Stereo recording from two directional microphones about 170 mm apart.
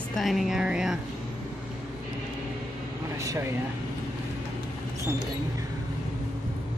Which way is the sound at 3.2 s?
15° right (ahead or behind).